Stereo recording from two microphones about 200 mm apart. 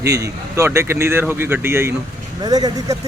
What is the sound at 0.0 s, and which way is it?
Speech, 15° right (ahead or behind).